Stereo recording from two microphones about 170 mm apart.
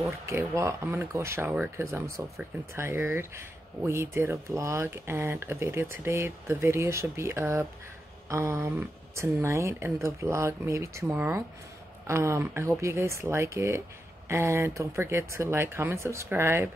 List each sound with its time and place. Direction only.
0.3 s speech: 15° right (ahead or behind)